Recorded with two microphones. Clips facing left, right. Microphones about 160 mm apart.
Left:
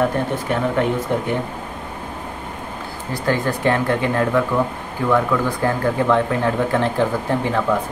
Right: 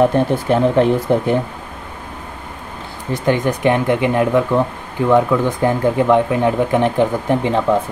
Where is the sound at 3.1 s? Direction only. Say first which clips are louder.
Right 4 dB; 20° right (ahead or behind).